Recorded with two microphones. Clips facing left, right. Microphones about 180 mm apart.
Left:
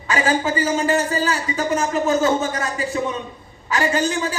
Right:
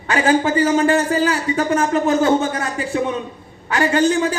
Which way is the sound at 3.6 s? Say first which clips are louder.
Right 4 dB; 65° right (ahead or behind).